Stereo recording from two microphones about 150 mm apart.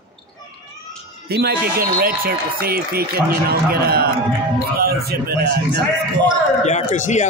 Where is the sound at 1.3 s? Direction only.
90° right.